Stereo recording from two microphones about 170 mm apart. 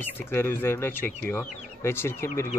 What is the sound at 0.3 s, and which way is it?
Speech, 15° left (ahead or behind).